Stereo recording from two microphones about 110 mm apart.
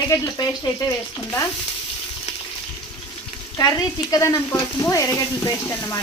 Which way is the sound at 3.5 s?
35° left (ahead or behind).